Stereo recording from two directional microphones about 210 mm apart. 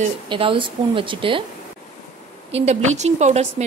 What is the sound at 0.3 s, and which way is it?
Speech, 25° right (ahead or behind).